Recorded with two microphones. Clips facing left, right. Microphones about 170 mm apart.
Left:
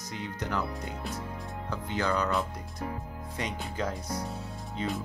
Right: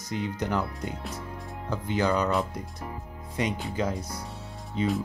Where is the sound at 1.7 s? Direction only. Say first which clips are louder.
Right 5 dB; 15° right (ahead or behind).